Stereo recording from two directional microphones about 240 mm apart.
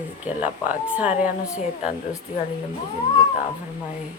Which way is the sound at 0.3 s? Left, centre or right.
Centre.